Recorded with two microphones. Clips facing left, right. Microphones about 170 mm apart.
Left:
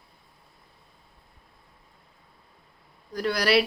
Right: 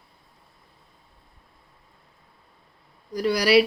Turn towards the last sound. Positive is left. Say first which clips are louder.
# right 4 dB
turn(degrees=-5)  # may be behind; listen again after turning